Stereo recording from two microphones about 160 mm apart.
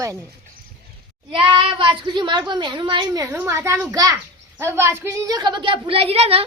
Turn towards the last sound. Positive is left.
turn(degrees=-40)  # may be behind; listen again after turning